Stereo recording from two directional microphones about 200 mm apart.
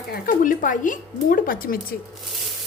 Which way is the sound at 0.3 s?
40° left (ahead or behind).